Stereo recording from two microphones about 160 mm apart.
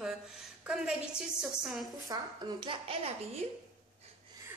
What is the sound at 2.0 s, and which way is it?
Speech, 30° right (ahead or behind).